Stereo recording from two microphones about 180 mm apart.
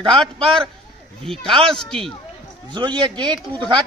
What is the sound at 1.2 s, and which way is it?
Speech, 5° left (ahead or behind).